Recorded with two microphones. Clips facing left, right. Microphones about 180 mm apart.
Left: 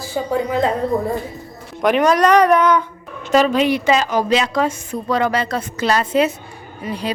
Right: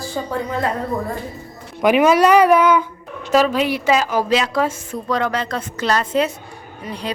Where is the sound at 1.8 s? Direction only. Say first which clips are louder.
Right 1 dB; 5° right (ahead or behind).